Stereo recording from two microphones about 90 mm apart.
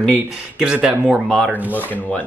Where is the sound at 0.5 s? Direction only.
10° right (ahead or behind).